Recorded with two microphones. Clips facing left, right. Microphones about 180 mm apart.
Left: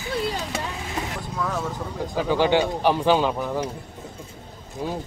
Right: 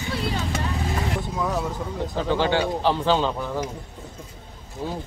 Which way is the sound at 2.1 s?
10° left (ahead or behind).